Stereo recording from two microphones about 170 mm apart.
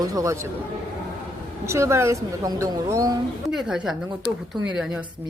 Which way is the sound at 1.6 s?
15° right (ahead or behind).